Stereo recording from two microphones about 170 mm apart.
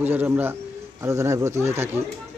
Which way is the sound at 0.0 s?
10° right (ahead or behind).